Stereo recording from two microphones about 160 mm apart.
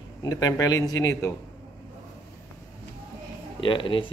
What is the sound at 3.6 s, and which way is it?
Speech, 30° left (ahead or behind).